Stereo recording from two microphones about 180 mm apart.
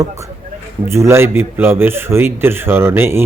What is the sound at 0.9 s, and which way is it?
Speech, 15° right (ahead or behind).